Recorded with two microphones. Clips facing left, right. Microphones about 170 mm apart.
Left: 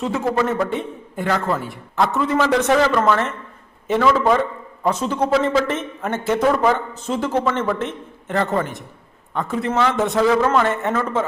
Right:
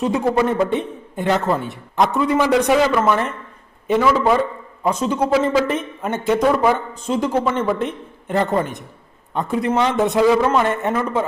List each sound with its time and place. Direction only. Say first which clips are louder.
0.0 s a man's voice: right 3 dB; 15° right (ahead or behind)